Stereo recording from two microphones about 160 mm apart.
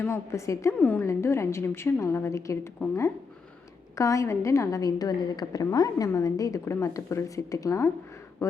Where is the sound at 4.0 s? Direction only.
20° left (ahead or behind).